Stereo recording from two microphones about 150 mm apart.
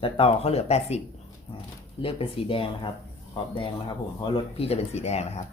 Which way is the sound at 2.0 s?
35° left (ahead or behind).